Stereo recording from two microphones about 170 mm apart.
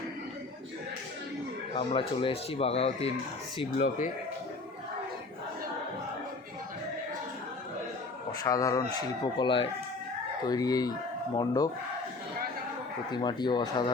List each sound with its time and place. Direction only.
1.7 s speech: 30° left (ahead or behind)
3.8 s speech: 50° left (ahead or behind)
8.4 s speech: 20° left (ahead or behind)
13.1 s speech: 25° left (ahead or behind)